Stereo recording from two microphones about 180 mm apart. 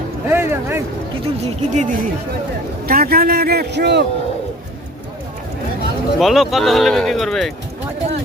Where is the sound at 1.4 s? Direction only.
45° right (ahead or behind).